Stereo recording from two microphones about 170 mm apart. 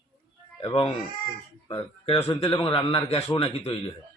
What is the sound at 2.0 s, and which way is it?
A man's voice, 35° left (ahead or behind).